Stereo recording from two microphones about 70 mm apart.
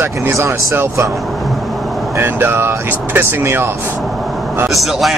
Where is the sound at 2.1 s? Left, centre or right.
Right.